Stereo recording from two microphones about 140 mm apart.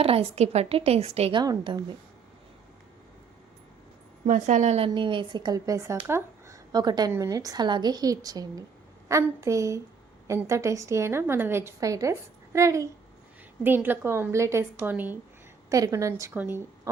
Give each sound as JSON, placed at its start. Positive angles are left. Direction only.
{"t": 0.0, "sound": "a woman's voice", "side_deg": -45}
{"t": 1.4, "sound": "a woman's voice", "side_deg": -30}
{"t": 4.3, "sound": "a woman's voice", "side_deg": -65}
{"t": 4.9, "sound": "a woman's voice", "side_deg": -35}
{"t": 15.7, "sound": "a woman's voice", "side_deg": -25}